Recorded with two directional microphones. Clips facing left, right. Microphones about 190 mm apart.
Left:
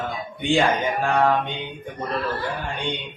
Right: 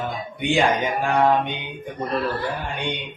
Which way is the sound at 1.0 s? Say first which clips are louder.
Right 2 dB; 15° right (ahead or behind).